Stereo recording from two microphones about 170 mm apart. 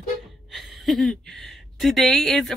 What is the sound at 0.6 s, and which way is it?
Speech, centre (ahead or behind).